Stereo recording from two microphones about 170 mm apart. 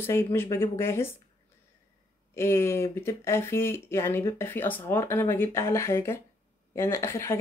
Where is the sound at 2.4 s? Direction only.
15° left (ahead or behind).